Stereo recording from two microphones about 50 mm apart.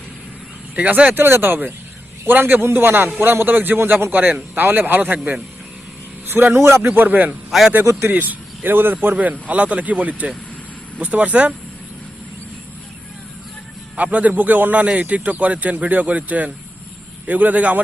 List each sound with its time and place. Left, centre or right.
0.8 s speech: right
1.1 s a man's voice: right
6.5 s a man's voice: right
6.8 s a man's voice: right
7.5 s a man's voice: centre
8.1 s speech: right
9.1 s speech: right
13.9 s a man's voice: right